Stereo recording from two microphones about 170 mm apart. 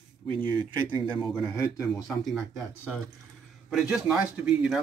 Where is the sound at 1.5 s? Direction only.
15° left (ahead or behind).